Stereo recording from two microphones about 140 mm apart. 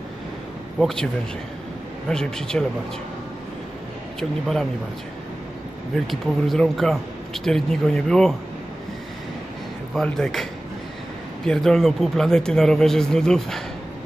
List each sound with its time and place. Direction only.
0.7 s speech: centre (ahead or behind)
2.0 s speech: 5° left (ahead or behind)
4.2 s speech: centre (ahead or behind)
6.0 s speech: centre (ahead or behind)
9.9 s speech: 5° left (ahead or behind)
11.4 s speech: 5° left (ahead or behind)